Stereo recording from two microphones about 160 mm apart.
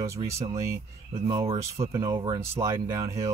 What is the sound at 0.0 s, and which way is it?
Speech, 20° right (ahead or behind).